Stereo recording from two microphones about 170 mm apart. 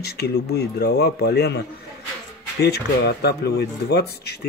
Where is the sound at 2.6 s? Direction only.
75° left (ahead or behind).